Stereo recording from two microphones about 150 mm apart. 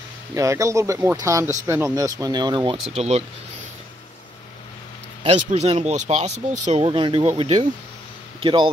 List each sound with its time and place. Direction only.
0.3 s speech: 20° right (ahead or behind)
2.9 s speech: 45° right (ahead or behind)
5.2 s speech: 45° right (ahead or behind)
6.9 s speech: 35° right (ahead or behind)